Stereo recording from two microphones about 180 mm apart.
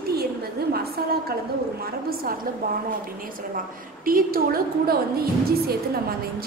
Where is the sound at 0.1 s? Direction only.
60° right (ahead or behind).